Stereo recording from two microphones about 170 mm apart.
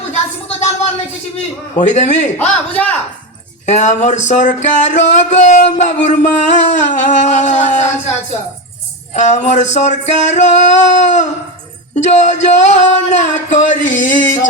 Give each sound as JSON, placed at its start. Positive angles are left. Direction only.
{"t": 0.1, "sound": "a sound", "side_deg": 40}
{"t": 1.8, "sound": "speech", "side_deg": 45}
{"t": 2.4, "sound": "a man's voice", "side_deg": 10}
{"t": 3.7, "sound": "speech", "side_deg": 45}